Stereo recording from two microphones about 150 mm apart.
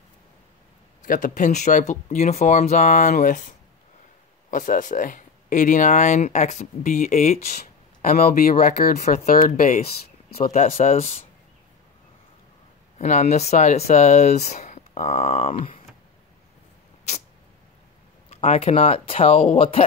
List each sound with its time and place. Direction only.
1.0 s speech: 65° left (ahead or behind)
8.1 s speech: 75° left (ahead or behind)
9.3 s speech: 65° left (ahead or behind)
10.5 s speech: 50° left (ahead or behind)
13.0 s speech: 50° left (ahead or behind)
18.3 s speech: 45° left (ahead or behind)